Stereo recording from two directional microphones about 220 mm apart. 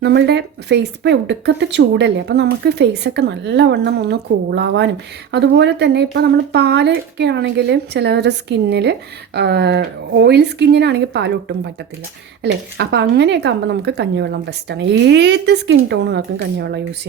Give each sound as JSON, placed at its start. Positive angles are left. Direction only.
{"t": 0.0, "sound": "speech", "side_deg": -50}